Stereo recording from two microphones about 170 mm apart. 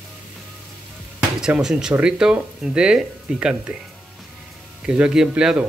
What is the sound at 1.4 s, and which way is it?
Speech, 5° right (ahead or behind).